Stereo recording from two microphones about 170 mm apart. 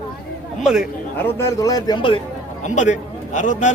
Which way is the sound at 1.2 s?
15° left (ahead or behind).